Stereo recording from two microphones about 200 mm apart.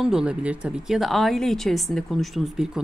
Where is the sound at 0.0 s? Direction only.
5° right (ahead or behind).